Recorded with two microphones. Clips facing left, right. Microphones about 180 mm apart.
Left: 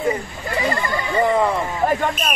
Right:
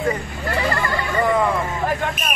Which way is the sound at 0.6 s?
20° left (ahead or behind).